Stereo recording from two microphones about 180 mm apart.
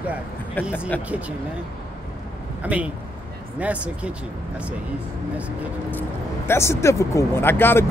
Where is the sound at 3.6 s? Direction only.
5° right (ahead or behind).